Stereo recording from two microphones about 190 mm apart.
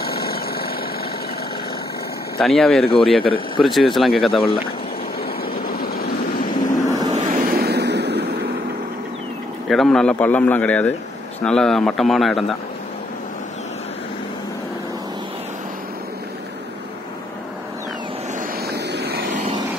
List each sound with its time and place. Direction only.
0.1 s engine: 55° left (ahead or behind)
2.3 s a man's voice: centre (ahead or behind)
2.8 s speech: 30° left (ahead or behind)
3.6 s a man's voice: centre (ahead or behind)
4.3 s speech: 30° left (ahead or behind)
5.4 s vehicle: 50° left (ahead or behind)
7.1 s vehicle: 40° right (ahead or behind); by 8.4 s 65° right (ahead or behind)
9.7 s a man's voice: centre (ahead or behind)
18.7 s vehicle: 60° right (ahead or behind)